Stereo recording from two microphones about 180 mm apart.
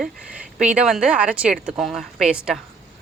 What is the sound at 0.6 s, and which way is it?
A woman's voice, 5° right (ahead or behind).